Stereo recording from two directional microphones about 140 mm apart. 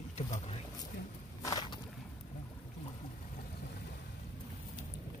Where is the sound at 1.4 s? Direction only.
25° left (ahead or behind).